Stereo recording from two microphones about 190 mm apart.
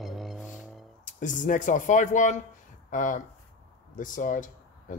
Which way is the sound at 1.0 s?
40° left (ahead or behind).